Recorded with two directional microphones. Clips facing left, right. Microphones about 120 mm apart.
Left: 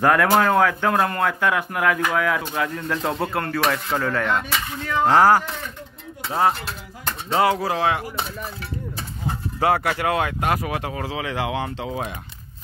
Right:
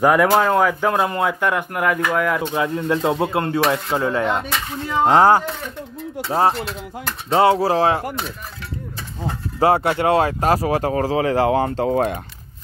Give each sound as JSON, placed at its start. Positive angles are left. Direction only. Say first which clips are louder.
{"t": 0.0, "sound": "speech", "louder": "right 2 dB", "side_deg": -10}
{"t": 1.4, "sound": "speech", "louder": "right 1 dB", "side_deg": 0}
{"t": 2.4, "sound": "speech", "louder": "right 5 dB", "side_deg": -20}
{"t": 9.6, "sound": "speech", "louder": "right 4 dB", "side_deg": -30}